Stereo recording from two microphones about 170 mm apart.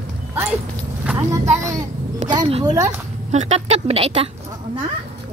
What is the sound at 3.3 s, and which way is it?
Speech, 40° right (ahead or behind).